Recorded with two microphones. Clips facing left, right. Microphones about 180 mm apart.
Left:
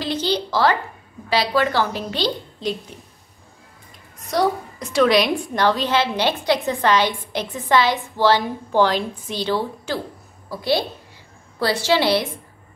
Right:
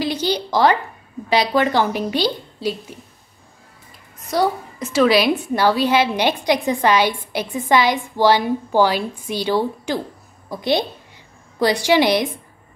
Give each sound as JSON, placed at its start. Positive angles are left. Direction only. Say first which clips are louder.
{"t": 0.0, "sound": "a sound", "louder": "right 1 dB", "side_deg": -10}
{"t": 1.3, "sound": "a woman's voice", "louder": "right 2 dB", "side_deg": -20}
{"t": 4.2, "sound": "a woman's voice", "louder": "right 1 dB", "side_deg": 0}